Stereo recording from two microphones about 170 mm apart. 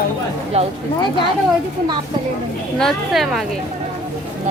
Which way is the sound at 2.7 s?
Centre (ahead or behind).